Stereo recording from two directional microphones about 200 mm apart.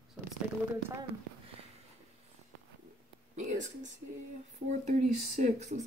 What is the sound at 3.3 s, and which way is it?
Speech, 35° right (ahead or behind).